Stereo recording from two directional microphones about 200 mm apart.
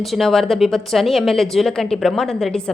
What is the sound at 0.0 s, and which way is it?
Speech, centre (ahead or behind).